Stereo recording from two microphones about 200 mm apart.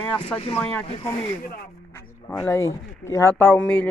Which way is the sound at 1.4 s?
50° left (ahead or behind).